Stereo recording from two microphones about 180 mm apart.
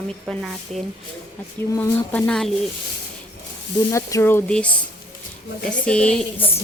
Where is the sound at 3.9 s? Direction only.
15° left (ahead or behind).